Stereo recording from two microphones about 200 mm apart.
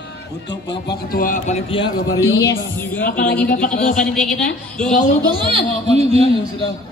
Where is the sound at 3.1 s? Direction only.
45° left (ahead or behind).